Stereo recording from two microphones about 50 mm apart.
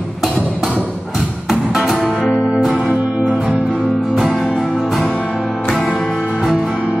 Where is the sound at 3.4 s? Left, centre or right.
Centre.